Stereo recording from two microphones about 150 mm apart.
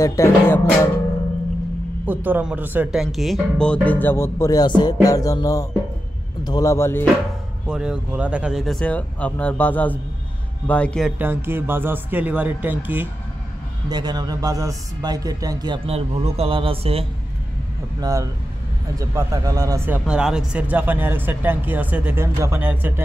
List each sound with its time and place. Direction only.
0.0 s music: 20° left (ahead or behind)
2.0 s speech: 10° right (ahead or behind); by 4.9 s 30° left (ahead or behind)
5.0 s music: 25° left (ahead or behind)
7.6 s a man's voice: 5° right (ahead or behind)
11.1 s speech: 15° right (ahead or behind)
13.8 s speech: 30° right (ahead or behind)
15.9 s a man's voice: 40° right (ahead or behind)
18.0 s speech: 20° right (ahead or behind)
19.9 s speech: 5° right (ahead or behind)